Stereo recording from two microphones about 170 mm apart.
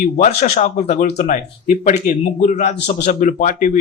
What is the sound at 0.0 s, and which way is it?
Speech, 45° left (ahead or behind).